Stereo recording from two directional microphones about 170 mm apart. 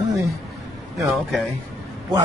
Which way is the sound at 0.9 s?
Centre (ahead or behind).